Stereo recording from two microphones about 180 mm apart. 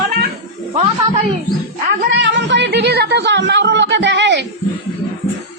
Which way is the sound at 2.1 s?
75° right (ahead or behind).